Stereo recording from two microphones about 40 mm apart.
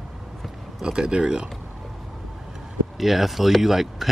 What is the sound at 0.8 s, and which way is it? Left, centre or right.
Speech, centre.